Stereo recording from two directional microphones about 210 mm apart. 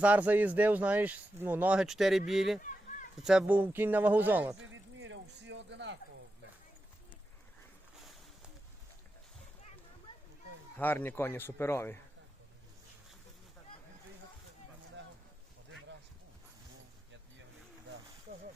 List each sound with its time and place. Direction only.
0.0 s speech: 5° right (ahead or behind)
4.6 s a sound: 65° right (ahead or behind)
10.8 s speech: 10° left (ahead or behind)